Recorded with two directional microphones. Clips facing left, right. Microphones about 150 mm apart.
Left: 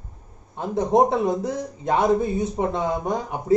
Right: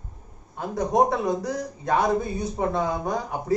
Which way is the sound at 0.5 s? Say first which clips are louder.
Left 3 dB; 25° left (ahead or behind).